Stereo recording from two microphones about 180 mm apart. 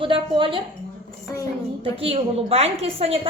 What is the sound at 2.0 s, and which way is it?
A woman's voice, 35° right (ahead or behind).